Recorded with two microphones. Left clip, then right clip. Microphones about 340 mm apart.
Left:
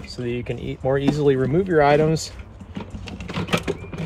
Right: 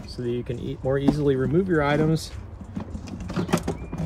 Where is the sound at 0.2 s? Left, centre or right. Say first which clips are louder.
Left 1 dB; centre.